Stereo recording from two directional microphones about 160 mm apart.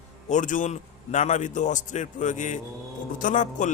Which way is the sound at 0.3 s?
50° left (ahead or behind).